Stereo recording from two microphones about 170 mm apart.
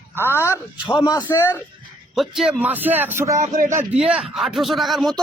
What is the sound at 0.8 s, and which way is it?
Speech, 30° left (ahead or behind).